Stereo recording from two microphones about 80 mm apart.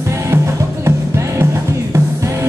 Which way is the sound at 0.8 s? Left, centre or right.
Right.